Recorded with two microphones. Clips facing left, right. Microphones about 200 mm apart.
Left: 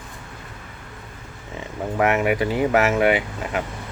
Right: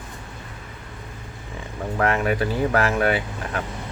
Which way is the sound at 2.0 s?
15° left (ahead or behind).